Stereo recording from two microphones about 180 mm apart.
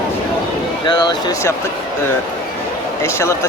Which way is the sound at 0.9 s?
25° left (ahead or behind).